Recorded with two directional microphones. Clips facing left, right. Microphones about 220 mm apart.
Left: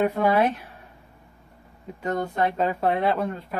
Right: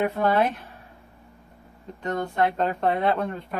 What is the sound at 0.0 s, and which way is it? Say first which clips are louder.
Speech: left 1 dB; 10° left (ahead or behind).